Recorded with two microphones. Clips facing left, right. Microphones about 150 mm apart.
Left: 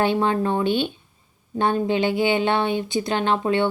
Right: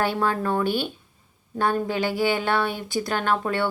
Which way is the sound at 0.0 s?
20° left (ahead or behind).